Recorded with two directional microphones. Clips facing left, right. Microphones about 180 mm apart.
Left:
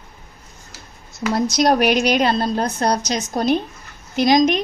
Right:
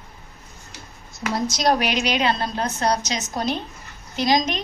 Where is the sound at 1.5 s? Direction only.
50° left (ahead or behind); by 3.2 s 35° left (ahead or behind).